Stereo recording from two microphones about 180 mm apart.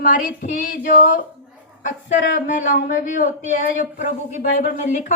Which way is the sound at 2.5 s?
45° left (ahead or behind).